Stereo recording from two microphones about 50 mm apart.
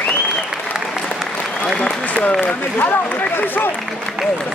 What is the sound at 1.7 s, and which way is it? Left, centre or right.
Applause, left.